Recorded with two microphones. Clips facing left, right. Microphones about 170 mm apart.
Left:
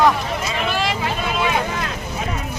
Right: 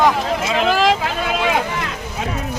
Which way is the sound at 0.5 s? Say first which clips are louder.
Right 8 dB; 90° right.